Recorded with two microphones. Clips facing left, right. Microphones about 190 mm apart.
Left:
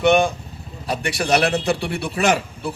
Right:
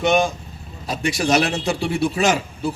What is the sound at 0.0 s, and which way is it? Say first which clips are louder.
A man's voice: left 2 dB; 60° left (ahead or behind).